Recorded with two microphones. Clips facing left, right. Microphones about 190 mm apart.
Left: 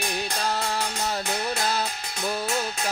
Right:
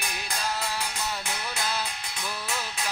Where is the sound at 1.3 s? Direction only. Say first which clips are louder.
Left 6 dB; 45° left (ahead or behind).